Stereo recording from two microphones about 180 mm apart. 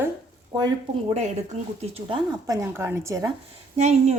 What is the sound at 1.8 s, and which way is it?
Speech, 30° right (ahead or behind).